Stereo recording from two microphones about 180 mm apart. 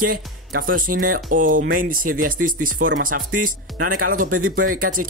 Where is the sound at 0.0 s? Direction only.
55° right (ahead or behind).